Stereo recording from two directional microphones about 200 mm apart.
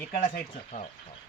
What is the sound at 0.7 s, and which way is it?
Speech, 40° left (ahead or behind).